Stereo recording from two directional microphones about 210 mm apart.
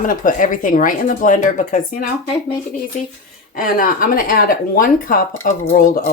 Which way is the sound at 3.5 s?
40° left (ahead or behind).